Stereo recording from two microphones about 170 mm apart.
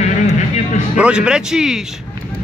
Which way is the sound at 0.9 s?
5° right (ahead or behind).